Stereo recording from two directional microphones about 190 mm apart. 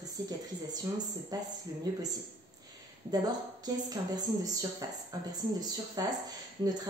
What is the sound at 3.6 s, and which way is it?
A woman's voice, 20° right (ahead or behind).